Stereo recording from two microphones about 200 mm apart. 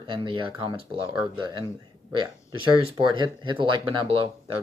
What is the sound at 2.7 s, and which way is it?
Speech, 25° right (ahead or behind).